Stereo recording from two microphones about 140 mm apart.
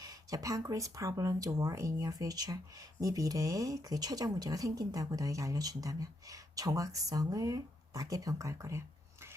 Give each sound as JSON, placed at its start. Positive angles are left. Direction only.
{"t": 0.0, "sound": "speech", "side_deg": -25}